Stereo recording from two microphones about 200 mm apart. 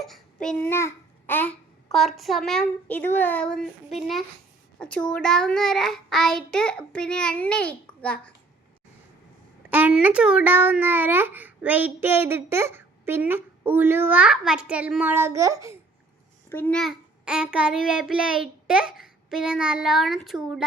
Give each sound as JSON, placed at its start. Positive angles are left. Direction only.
{"t": 0.0, "sound": "a child's voice", "side_deg": 0}
{"t": 9.6, "sound": "a child's voice", "side_deg": -10}
{"t": 16.5, "sound": "a child's voice", "side_deg": 10}